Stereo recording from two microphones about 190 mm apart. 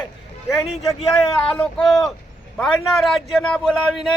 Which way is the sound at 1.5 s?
Centre (ahead or behind).